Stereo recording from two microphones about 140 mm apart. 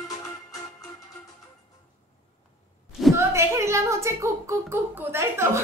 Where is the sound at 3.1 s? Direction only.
20° right (ahead or behind).